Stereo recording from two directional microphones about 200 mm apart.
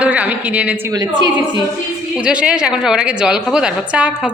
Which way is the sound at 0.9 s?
20° right (ahead or behind).